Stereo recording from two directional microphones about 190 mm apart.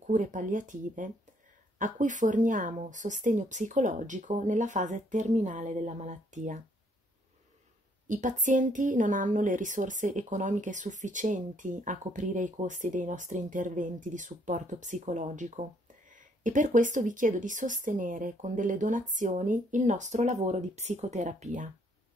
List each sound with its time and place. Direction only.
0.0 s a woman's voice: 40° right (ahead or behind)
8.1 s a woman's voice: 40° right (ahead or behind)